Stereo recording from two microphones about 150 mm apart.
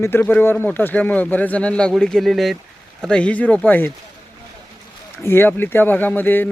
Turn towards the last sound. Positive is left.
turn(degrees=15)  # may be behind; listen again after turning